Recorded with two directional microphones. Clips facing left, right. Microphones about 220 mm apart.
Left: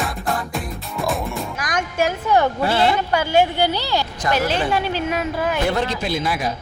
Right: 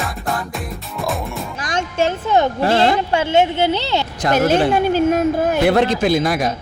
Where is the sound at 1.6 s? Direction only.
25° right (ahead or behind).